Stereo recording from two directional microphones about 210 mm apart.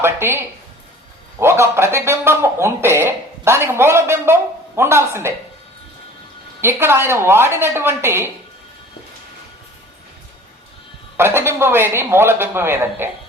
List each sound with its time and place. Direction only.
0.0 s a man's voice: 10° right (ahead or behind)
6.6 s a man's voice: 10° right (ahead or behind)
11.2 s a man's voice: 10° right (ahead or behind)